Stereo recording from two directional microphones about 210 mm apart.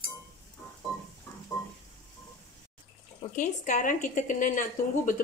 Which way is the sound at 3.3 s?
35° left (ahead or behind).